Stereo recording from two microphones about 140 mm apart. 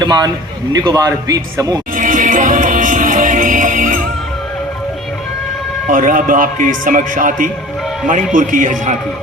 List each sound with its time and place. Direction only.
0.0 s a man's voice: 30° right (ahead or behind)
2.0 s music: 70° right (ahead or behind)
5.9 s speech: 70° right (ahead or behind)